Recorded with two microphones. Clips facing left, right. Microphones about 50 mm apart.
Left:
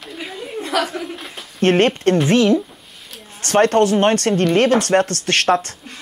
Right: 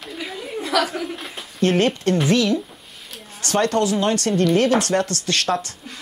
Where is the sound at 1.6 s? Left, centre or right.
Left.